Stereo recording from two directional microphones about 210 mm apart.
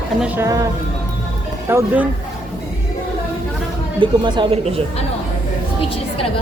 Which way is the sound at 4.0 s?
20° right (ahead or behind).